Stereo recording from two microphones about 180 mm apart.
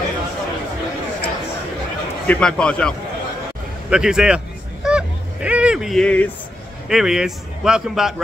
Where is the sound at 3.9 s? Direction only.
5° right (ahead or behind).